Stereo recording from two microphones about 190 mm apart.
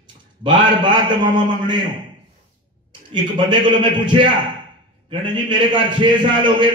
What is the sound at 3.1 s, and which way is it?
A man's voice, 25° right (ahead or behind).